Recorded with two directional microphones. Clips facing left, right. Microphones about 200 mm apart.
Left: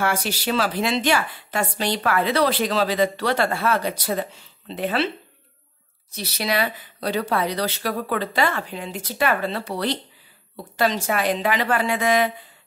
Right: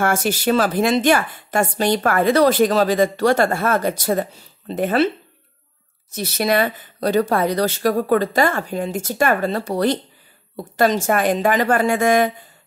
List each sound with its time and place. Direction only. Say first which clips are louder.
0.0 s a woman's voice: right 5 dB; 50° right (ahead or behind)
6.1 s a woman's voice: right 6 dB; 50° right (ahead or behind)